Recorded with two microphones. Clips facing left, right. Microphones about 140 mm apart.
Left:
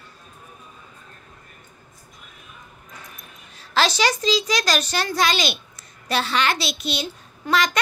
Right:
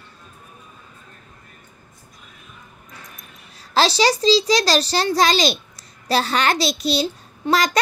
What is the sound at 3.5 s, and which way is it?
A child's voice, 35° right (ahead or behind).